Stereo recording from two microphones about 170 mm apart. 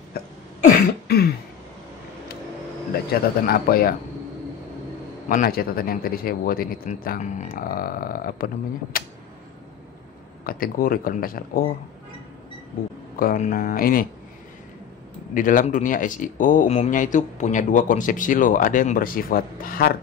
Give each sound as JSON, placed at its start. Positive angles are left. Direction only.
{"t": 0.7, "sound": "cough", "side_deg": 65}
{"t": 3.1, "sound": "speech", "side_deg": 60}
{"t": 5.3, "sound": "speech", "side_deg": 60}
{"t": 10.4, "sound": "speech", "side_deg": 60}
{"t": 13.1, "sound": "speech", "side_deg": 55}
{"t": 15.3, "sound": "speech", "side_deg": 50}